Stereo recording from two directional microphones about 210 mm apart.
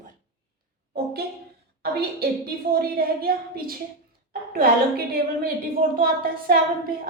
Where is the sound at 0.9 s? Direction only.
50° right (ahead or behind).